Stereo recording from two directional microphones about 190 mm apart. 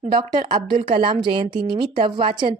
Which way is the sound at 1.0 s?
25° right (ahead or behind).